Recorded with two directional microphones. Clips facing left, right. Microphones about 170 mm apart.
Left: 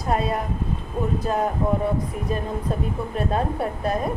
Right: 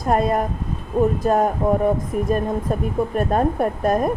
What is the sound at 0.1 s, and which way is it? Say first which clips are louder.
A woman's voice: right 5 dB; 50° right (ahead or behind).